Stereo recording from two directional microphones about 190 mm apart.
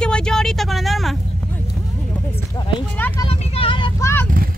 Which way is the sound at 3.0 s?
10° left (ahead or behind).